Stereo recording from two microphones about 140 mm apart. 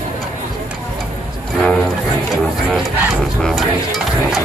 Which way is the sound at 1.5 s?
Centre (ahead or behind).